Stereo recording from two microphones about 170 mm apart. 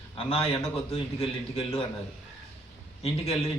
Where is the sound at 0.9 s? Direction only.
35° left (ahead or behind).